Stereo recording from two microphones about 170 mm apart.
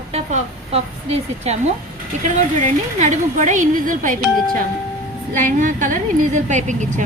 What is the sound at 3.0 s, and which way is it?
A woman's voice, 45° right (ahead or behind).